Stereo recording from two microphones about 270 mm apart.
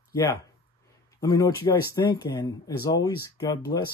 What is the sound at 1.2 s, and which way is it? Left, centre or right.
Speech, centre.